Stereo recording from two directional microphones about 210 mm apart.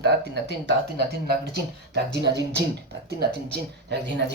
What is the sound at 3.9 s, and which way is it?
Speech, 50° right (ahead or behind).